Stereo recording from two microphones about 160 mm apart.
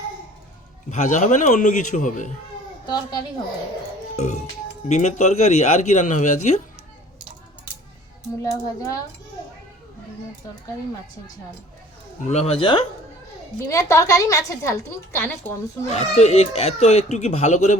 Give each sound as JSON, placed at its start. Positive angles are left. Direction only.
{"t": 0.9, "sound": "speech", "side_deg": 50}
{"t": 2.8, "sound": "a woman's voice", "side_deg": 25}
{"t": 4.2, "sound": "speech", "side_deg": 45}
{"t": 8.4, "sound": "a woman's voice", "side_deg": 20}
{"t": 12.3, "sound": "speech", "side_deg": 40}
{"t": 13.7, "sound": "a woman's voice", "side_deg": 20}
{"t": 15.9, "sound": "speech", "side_deg": 45}